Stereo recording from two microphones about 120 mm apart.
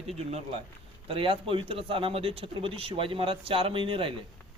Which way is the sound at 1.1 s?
50° right (ahead or behind).